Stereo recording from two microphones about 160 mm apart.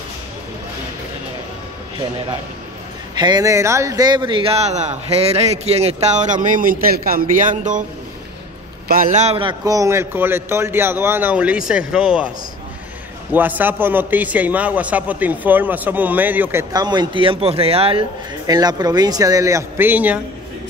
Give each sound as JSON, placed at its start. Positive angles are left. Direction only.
{"t": 3.2, "sound": "a man's voice", "side_deg": -25}
{"t": 8.8, "sound": "a man's voice", "side_deg": -60}
{"t": 13.3, "sound": "a man's voice", "side_deg": -10}
{"t": 16.7, "sound": "a man's voice", "side_deg": -25}
{"t": 18.5, "sound": "speech", "side_deg": -25}